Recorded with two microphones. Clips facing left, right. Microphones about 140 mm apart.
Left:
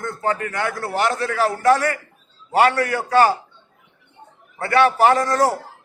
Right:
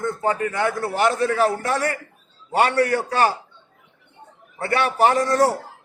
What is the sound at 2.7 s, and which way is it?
Speech, 35° right (ahead or behind).